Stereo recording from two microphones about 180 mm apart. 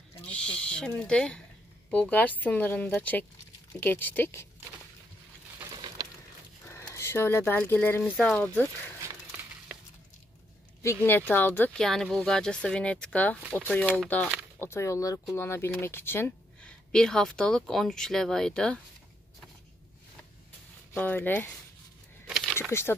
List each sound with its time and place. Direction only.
0.3 s speech: 5° left (ahead or behind)
5.6 s a sound: 20° right (ahead or behind)
6.7 s speech: 15° left (ahead or behind)
10.8 s speech: 15° left (ahead or behind)
20.9 s speech: 10° left (ahead or behind)
22.3 s a sound: centre (ahead or behind)
22.6 s speech: 15° left (ahead or behind)